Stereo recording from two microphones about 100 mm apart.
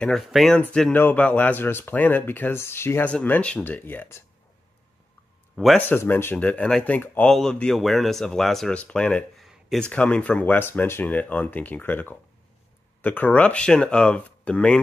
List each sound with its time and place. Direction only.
0.0 s speech: centre (ahead or behind)
0.9 s speech: 15° left (ahead or behind)
5.8 s speech: 20° left (ahead or behind)
7.2 s speech: 5° left (ahead or behind)
9.4 s a sound: centre (ahead or behind)
9.8 s speech: 10° left (ahead or behind)